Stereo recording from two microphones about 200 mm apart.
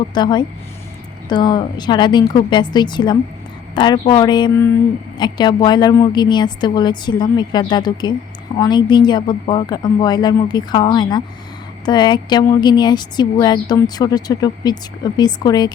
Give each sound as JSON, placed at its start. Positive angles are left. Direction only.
{"t": 0.1, "sound": "speech", "side_deg": 20}